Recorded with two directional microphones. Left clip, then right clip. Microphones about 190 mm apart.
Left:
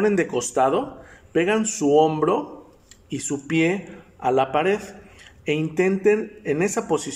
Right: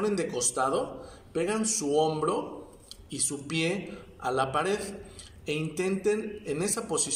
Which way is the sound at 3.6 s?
10° left (ahead or behind).